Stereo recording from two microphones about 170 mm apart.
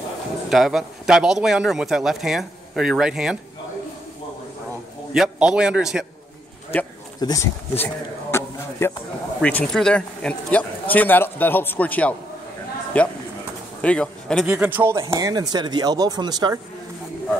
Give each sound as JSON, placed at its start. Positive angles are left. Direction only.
{"t": 0.5, "sound": "speech", "side_deg": 0}
{"t": 5.1, "sound": "speech", "side_deg": -5}
{"t": 7.2, "sound": "a man's voice", "side_deg": 20}
{"t": 14.5, "sound": "speech", "side_deg": -10}